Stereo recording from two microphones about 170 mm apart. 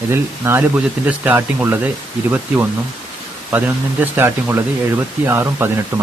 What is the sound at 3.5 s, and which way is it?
Speech, 10° right (ahead or behind).